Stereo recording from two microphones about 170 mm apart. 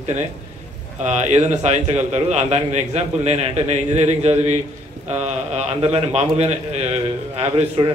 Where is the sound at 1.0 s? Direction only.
40° right (ahead or behind).